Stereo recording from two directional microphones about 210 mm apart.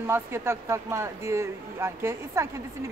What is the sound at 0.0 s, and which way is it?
Speech, 10° right (ahead or behind).